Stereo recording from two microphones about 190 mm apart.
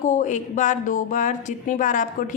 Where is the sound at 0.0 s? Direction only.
40° left (ahead or behind).